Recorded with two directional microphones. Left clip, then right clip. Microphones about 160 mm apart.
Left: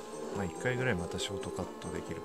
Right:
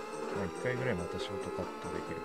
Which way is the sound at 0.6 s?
25° left (ahead or behind).